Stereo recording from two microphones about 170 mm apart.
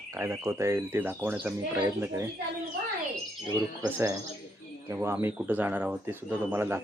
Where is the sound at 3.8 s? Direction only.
15° right (ahead or behind).